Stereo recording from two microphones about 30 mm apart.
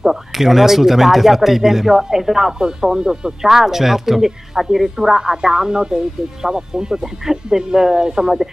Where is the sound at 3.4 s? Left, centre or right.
Centre.